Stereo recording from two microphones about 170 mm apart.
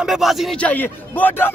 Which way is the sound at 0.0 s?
Centre (ahead or behind).